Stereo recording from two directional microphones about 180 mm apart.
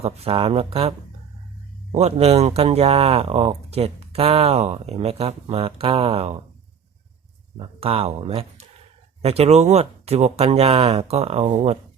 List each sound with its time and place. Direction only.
0.0 s speech: 30° right (ahead or behind)
7.6 s speech: 30° right (ahead or behind)